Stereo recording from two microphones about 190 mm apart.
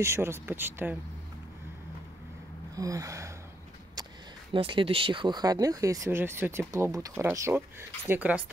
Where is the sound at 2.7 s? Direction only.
15° right (ahead or behind).